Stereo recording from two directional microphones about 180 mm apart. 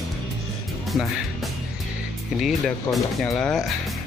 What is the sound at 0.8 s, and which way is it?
Music, centre (ahead or behind).